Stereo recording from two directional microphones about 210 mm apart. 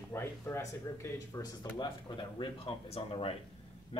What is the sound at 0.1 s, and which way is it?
Speech, 10° left (ahead or behind).